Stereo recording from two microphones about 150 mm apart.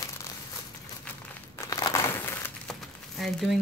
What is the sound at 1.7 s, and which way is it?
Crumpling, 25° left (ahead or behind).